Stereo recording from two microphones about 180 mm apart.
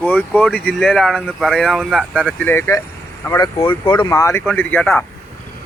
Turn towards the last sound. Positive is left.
turn(degrees=10)  # may be behind; listen again after turning